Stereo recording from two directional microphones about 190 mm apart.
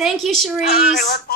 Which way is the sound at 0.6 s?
55° left (ahead or behind).